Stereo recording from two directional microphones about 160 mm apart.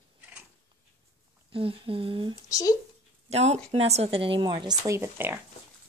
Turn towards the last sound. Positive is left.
turn(degrees=-15)  # may be behind; listen again after turning